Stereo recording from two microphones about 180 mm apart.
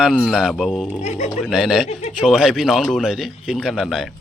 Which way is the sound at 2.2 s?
Centre (ahead or behind).